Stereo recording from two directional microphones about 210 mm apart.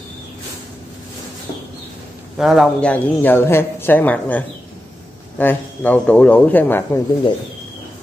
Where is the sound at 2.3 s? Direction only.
Centre (ahead or behind).